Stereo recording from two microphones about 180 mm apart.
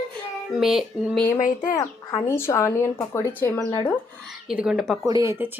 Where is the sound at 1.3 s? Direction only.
45° left (ahead or behind).